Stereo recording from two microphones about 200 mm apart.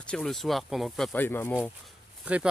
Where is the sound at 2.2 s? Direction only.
5° right (ahead or behind).